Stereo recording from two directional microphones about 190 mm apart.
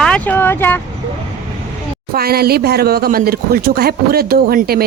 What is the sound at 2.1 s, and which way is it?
Speech, 55° right (ahead or behind).